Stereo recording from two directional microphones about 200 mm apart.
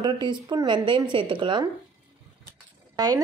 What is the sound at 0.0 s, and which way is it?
A woman's voice, 20° right (ahead or behind).